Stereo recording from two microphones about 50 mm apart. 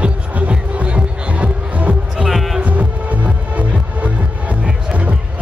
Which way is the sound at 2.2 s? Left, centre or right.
Centre.